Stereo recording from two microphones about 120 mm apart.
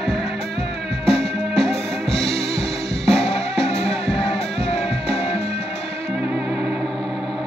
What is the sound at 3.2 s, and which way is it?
Music, 55° left (ahead or behind).